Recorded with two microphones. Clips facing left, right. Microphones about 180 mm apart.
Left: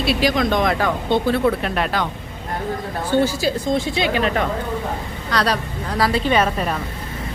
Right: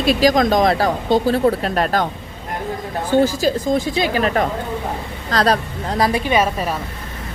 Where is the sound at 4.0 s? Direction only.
40° right (ahead or behind).